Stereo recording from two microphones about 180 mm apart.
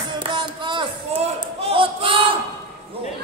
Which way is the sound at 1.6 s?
30° right (ahead or behind).